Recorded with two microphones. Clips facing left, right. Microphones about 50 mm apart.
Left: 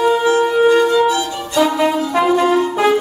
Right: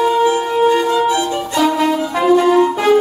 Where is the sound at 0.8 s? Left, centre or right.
Right.